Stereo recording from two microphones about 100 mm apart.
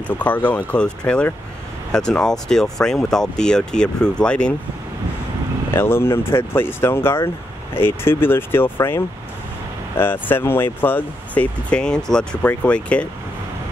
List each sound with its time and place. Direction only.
0.1 s speech: 15° left (ahead or behind)
5.7 s speech: 25° left (ahead or behind)